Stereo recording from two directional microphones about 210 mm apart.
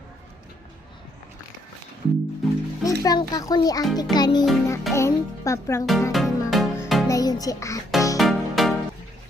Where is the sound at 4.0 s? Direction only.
20° left (ahead or behind).